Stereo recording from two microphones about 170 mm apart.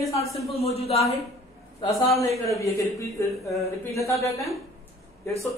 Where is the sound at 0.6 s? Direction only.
35° left (ahead or behind).